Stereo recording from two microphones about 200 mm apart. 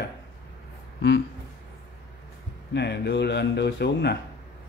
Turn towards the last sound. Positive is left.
turn(degrees=55)  # may be behind; listen again after turning